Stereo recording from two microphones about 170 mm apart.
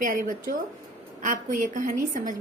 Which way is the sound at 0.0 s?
50° right (ahead or behind).